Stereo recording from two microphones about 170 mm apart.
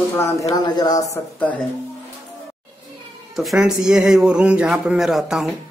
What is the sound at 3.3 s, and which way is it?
Speech, centre (ahead or behind).